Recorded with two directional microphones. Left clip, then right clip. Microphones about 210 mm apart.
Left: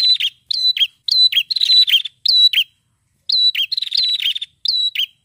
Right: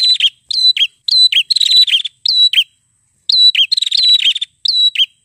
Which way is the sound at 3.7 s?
45° right (ahead or behind).